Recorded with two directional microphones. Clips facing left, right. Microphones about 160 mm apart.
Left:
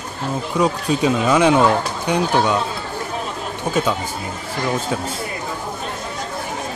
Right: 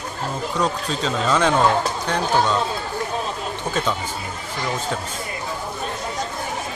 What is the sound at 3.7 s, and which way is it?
Speech, 10° left (ahead or behind).